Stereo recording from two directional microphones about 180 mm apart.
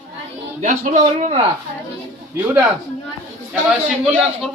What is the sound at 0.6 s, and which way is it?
Speech, 45° right (ahead or behind).